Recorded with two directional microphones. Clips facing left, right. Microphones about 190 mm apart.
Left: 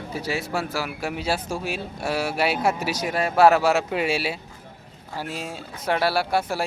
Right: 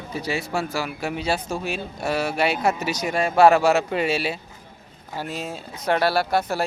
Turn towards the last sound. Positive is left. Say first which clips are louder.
# right 1 dB
turn(degrees=10)  # may be behind; listen again after turning